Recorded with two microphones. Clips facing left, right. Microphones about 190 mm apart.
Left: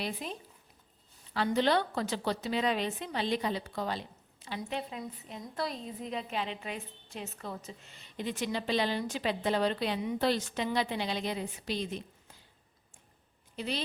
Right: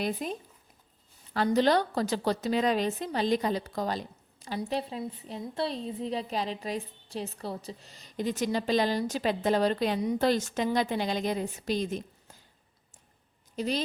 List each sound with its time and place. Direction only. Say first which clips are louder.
0.0 s a woman's voice: right 6 dB; 45° right (ahead or behind)
13.6 s a woman's voice: right 6 dB; 40° right (ahead or behind)